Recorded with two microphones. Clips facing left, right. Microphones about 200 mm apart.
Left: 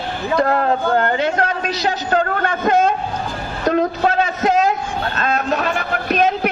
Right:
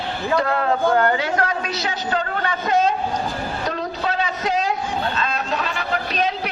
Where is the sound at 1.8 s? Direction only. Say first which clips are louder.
Left 6 dB; 45° left (ahead or behind).